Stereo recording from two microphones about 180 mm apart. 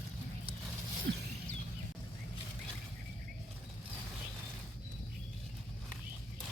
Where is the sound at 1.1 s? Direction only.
60° right (ahead or behind).